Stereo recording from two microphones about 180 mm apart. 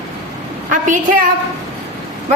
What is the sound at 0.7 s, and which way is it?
Speech, 45° right (ahead or behind).